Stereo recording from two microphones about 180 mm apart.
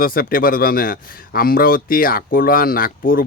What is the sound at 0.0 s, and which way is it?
Speech, 55° left (ahead or behind).